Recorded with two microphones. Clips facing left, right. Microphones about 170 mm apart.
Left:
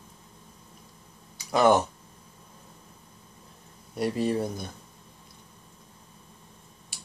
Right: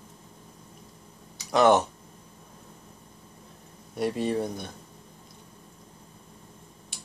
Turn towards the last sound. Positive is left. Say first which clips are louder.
# right 2 dB
turn(degrees=5)  # may be behind; listen again after turning